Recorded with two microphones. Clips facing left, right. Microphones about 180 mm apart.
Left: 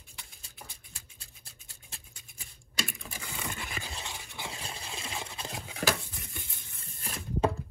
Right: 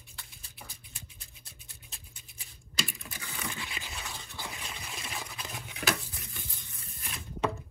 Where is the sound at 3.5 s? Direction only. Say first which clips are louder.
Left 2 dB; 50° left (ahead or behind).